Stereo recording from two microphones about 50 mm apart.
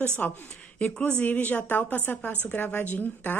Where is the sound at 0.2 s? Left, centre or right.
Left.